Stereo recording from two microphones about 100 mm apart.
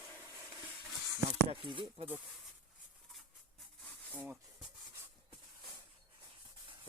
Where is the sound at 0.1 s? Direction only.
20° left (ahead or behind).